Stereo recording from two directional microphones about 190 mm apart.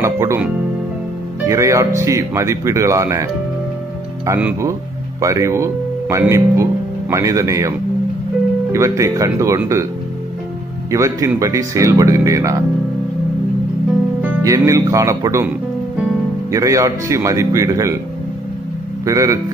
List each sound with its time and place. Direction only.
0.0 s speech: 15° right (ahead or behind)
1.5 s speech: 15° right (ahead or behind)
4.3 s speech: 10° right (ahead or behind)
8.7 s speech: 15° right (ahead or behind)
10.9 s speech: 15° right (ahead or behind)
14.2 s speech: 15° right (ahead or behind)
16.5 s speech: 15° right (ahead or behind)
19.0 s speech: 15° right (ahead or behind)